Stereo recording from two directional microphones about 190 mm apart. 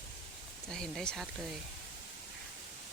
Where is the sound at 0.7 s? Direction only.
5° left (ahead or behind).